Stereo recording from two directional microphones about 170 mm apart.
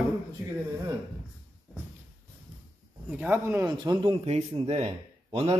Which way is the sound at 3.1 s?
10° right (ahead or behind).